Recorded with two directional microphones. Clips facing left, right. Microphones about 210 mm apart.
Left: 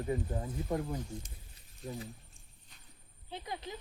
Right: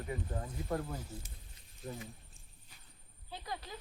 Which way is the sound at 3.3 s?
20° left (ahead or behind).